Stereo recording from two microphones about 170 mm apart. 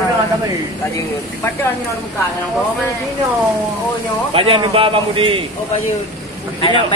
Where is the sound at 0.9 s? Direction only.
15° left (ahead or behind).